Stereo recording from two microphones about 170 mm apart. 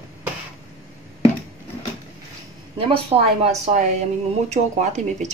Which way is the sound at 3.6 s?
45° right (ahead or behind).